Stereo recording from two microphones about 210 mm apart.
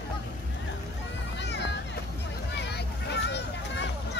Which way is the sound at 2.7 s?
55° left (ahead or behind).